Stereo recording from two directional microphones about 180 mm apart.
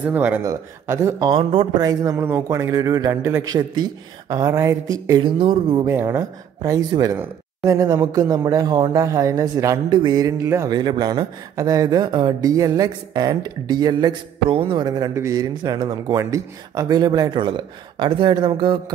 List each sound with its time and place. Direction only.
0.1 s speech: 10° right (ahead or behind)
1.3 s speech: 30° right (ahead or behind)
5.9 s speech: 15° right (ahead or behind)